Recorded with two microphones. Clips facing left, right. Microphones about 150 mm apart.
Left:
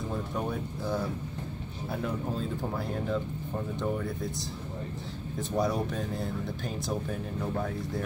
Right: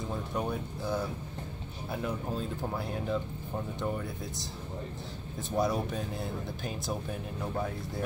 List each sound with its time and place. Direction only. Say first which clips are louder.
0.3 s speech: left 1 dB; centre (ahead or behind)
5.6 s speech: even; centre (ahead or behind)